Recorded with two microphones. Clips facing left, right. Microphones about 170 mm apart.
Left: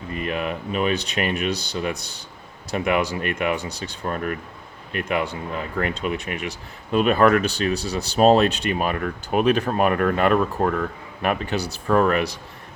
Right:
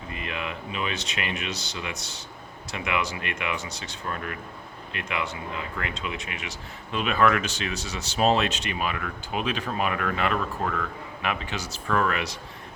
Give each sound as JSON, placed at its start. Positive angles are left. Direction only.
{"t": 0.1, "sound": "speech", "side_deg": 40}